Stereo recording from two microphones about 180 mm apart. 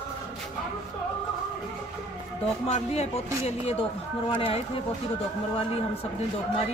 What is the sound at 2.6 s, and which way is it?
Speech, 35° left (ahead or behind).